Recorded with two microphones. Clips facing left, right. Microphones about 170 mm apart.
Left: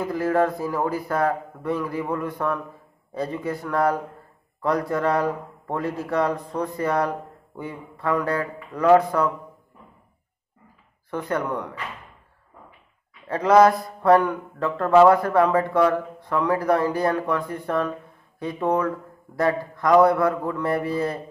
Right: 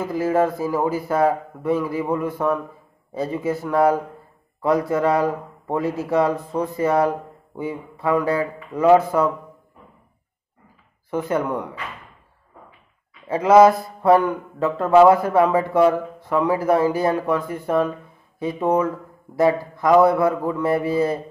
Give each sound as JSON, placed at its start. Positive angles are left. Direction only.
{"t": 0.0, "sound": "a man's voice", "side_deg": -5}
{"t": 11.1, "sound": "a man's voice", "side_deg": -5}
{"t": 13.3, "sound": "a man's voice", "side_deg": -5}